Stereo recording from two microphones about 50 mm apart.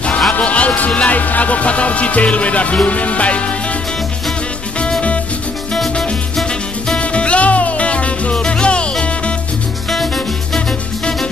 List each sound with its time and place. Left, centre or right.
0.3 s speech: left
7.0 s music: left
9.8 s music: centre